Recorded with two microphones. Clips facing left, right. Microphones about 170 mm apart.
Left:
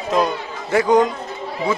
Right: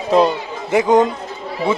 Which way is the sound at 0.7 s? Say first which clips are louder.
Right 2 dB; 20° right (ahead or behind).